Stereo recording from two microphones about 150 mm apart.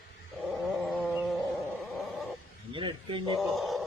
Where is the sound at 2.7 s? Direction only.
35° right (ahead or behind).